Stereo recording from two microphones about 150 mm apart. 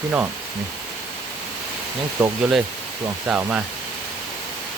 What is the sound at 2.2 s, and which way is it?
Speech, 10° right (ahead or behind).